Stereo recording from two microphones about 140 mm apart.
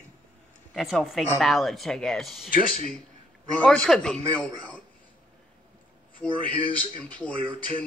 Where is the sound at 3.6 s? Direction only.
5° left (ahead or behind).